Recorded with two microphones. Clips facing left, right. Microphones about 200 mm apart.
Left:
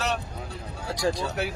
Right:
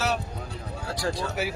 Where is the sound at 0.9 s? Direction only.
15° left (ahead or behind).